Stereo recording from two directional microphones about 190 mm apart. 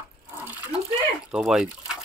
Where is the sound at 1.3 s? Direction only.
5° right (ahead or behind).